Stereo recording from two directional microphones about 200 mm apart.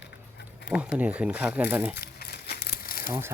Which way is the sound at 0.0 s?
60° left (ahead or behind).